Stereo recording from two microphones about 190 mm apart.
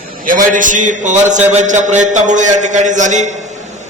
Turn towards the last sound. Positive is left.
turn(degrees=-40)  # may be behind; listen again after turning